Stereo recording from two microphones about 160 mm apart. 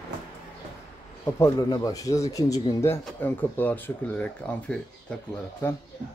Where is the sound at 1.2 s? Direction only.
20° left (ahead or behind).